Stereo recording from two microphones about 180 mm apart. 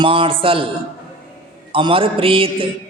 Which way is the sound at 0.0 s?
30° right (ahead or behind).